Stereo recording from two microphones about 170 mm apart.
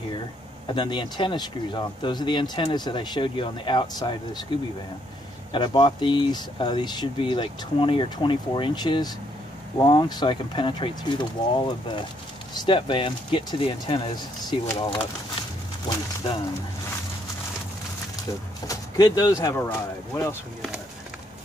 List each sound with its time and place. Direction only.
0.7 s speech: 25° left (ahead or behind)
5.5 s speech: 30° left (ahead or behind)
18.7 s speech: 20° left (ahead or behind)